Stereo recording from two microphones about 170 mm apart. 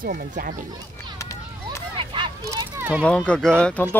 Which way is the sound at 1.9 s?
30° right (ahead or behind).